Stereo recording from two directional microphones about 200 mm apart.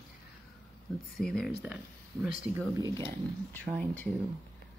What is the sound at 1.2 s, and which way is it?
Speech, 5° left (ahead or behind).